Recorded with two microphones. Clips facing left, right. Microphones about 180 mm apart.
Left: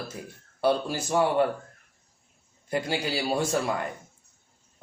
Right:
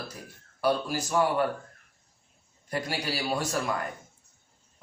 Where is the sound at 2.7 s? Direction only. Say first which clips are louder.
Left 3 dB; 25° left (ahead or behind).